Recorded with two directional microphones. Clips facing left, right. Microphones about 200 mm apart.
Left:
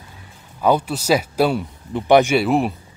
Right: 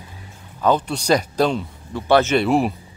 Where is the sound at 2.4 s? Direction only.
Centre (ahead or behind).